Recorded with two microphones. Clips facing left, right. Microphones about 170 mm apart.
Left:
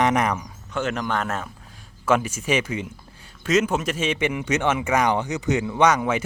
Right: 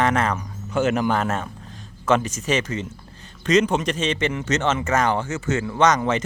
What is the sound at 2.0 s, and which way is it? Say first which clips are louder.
Speech: right 1 dB; 10° left (ahead or behind).